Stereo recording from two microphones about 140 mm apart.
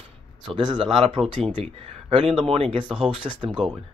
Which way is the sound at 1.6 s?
50° right (ahead or behind).